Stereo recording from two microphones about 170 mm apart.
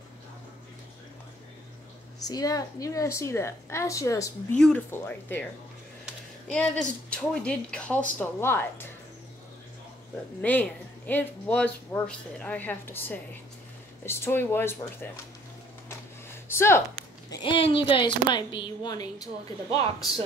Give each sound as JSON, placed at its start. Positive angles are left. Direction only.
{"t": 2.2, "sound": "a woman's voice", "side_deg": 20}
{"t": 4.6, "sound": "speech", "side_deg": 5}
{"t": 10.4, "sound": "speech", "side_deg": 10}
{"t": 16.4, "sound": "speech", "side_deg": 15}
{"t": 17.4, "sound": "a woman's voice", "side_deg": 30}